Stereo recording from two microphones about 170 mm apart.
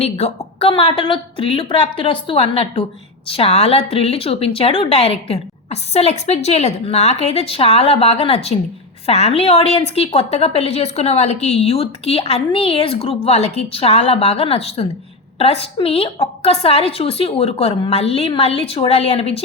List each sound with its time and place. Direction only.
0.0 s a woman's voice: 35° left (ahead or behind)